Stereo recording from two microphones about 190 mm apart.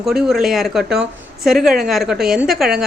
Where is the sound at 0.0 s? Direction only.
Centre (ahead or behind).